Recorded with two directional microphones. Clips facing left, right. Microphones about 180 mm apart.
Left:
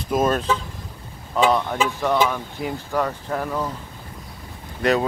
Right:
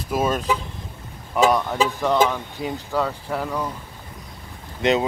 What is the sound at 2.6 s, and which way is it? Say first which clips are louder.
Speech: even; 25° right (ahead or behind).